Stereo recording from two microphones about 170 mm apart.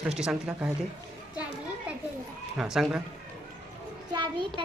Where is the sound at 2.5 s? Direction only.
5° right (ahead or behind).